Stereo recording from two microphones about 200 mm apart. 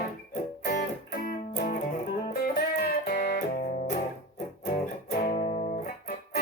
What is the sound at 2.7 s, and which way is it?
Music, 45° left (ahead or behind).